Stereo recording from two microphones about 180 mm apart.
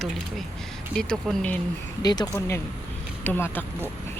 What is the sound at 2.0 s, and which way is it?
A woman's voice, 20° left (ahead or behind).